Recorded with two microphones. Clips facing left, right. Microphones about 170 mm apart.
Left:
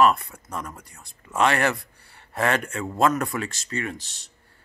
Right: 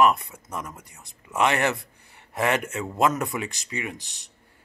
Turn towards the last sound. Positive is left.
turn(degrees=-15)  # may be behind; listen again after turning